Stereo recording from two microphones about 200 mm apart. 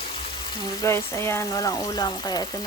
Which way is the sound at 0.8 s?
15° left (ahead or behind).